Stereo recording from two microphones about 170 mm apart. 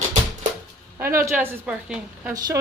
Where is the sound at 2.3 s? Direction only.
20° right (ahead or behind).